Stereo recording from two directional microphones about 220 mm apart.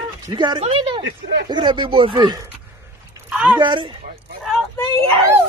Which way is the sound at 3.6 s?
20° right (ahead or behind).